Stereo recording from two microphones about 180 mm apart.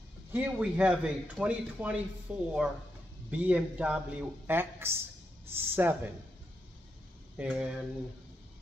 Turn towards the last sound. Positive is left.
turn(degrees=-5)  # may be behind; listen again after turning